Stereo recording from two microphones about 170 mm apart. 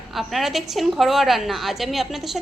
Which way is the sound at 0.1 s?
Centre (ahead or behind).